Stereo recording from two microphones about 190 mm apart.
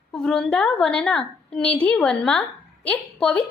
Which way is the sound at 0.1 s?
5° left (ahead or behind).